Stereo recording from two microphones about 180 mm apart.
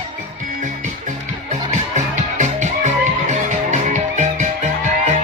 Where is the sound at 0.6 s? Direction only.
45° right (ahead or behind).